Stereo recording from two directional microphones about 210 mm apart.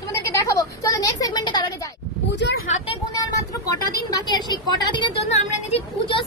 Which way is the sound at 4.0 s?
20° left (ahead or behind).